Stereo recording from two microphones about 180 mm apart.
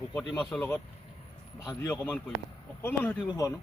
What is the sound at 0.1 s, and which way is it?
Speech, 20° left (ahead or behind).